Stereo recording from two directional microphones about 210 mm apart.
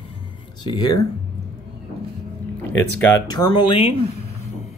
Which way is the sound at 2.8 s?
10° left (ahead or behind).